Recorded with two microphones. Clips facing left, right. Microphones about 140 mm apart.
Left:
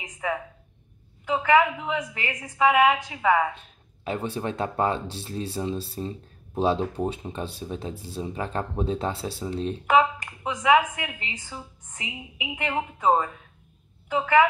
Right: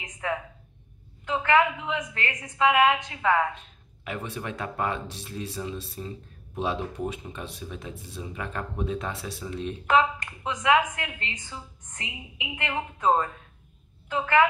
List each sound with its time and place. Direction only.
1.2 s a woman's voice: 5° left (ahead or behind)
4.0 s speech: 30° left (ahead or behind)
9.8 s a woman's voice: 5° left (ahead or behind)